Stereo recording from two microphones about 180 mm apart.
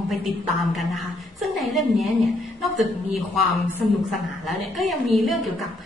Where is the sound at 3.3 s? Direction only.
Centre (ahead or behind).